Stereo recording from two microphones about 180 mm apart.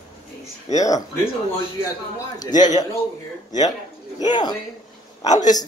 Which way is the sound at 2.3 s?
20° left (ahead or behind).